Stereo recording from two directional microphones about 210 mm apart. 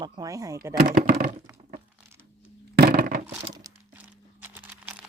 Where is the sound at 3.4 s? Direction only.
20° right (ahead or behind).